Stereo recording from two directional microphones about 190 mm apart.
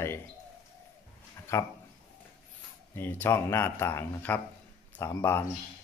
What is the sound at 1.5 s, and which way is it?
Speech, 15° left (ahead or behind).